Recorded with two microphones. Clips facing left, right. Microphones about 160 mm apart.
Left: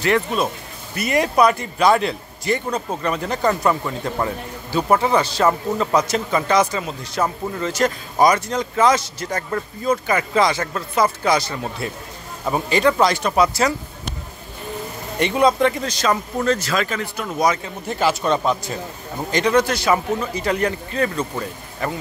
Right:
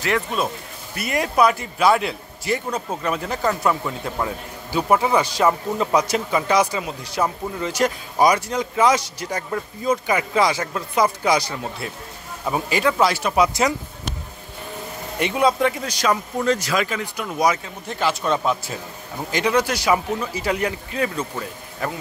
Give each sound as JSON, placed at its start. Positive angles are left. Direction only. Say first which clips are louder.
{"t": 0.0, "sound": "a man's voice", "louder": "left 3 dB", "side_deg": 0}
{"t": 11.8, "sound": "a man's voice", "louder": "left 3 dB", "side_deg": 0}
{"t": 13.5, "sound": "speech", "louder": "left 1 dB", "side_deg": -20}
{"t": 15.1, "sound": "speech", "louder": "left 2 dB", "side_deg": -5}
{"t": 17.8, "sound": "a man's voice", "louder": "left 3 dB", "side_deg": 5}